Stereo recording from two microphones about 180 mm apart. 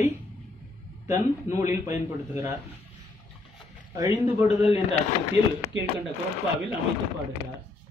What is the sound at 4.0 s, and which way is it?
Speech, 15° right (ahead or behind).